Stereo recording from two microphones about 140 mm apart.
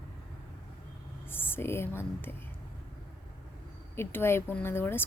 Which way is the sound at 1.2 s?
15° left (ahead or behind).